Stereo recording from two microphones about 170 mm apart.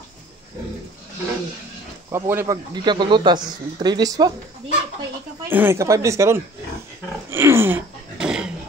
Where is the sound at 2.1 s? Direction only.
15° right (ahead or behind).